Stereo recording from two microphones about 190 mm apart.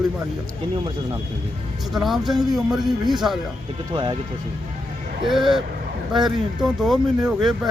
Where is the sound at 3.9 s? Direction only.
25° right (ahead or behind).